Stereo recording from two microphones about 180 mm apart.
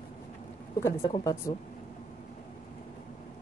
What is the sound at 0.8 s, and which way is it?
Speech, 15° left (ahead or behind).